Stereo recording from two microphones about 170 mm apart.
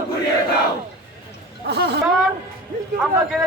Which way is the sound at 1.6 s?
85° right.